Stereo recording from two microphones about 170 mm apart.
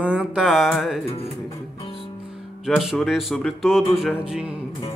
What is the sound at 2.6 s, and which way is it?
Speech, centre (ahead or behind).